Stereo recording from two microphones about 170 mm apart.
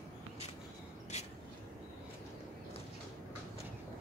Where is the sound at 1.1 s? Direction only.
40° left (ahead or behind).